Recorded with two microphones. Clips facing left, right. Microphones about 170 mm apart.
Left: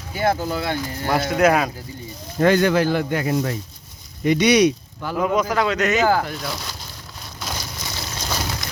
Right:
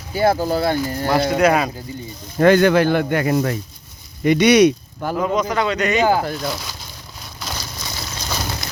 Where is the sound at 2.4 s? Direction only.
60° right (ahead or behind).